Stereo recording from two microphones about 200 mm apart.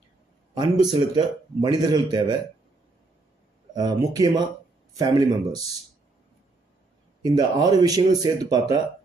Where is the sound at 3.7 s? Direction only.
20° right (ahead or behind).